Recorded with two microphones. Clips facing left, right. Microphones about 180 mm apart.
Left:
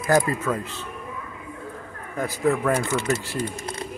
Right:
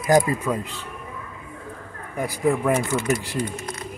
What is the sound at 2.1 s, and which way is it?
Speech, 15° right (ahead or behind).